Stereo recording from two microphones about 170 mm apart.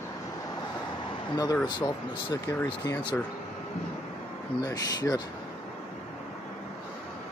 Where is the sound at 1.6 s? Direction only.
25° left (ahead or behind).